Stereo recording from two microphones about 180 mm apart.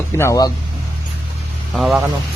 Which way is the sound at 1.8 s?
Centre (ahead or behind).